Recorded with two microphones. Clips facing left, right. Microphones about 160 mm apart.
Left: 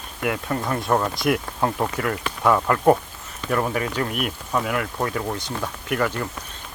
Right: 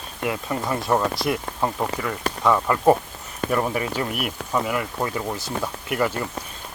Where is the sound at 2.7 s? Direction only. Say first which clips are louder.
Even; 5° right (ahead or behind).